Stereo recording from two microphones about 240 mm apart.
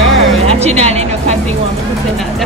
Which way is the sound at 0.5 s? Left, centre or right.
Right.